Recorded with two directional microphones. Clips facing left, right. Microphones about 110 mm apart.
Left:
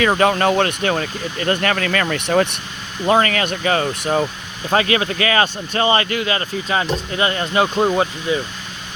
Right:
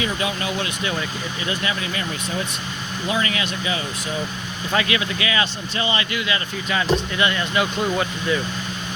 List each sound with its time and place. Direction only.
0.0 s speech: 60° left (ahead or behind)
3.1 s speech: 50° left (ahead or behind)
4.7 s speech: 35° left (ahead or behind)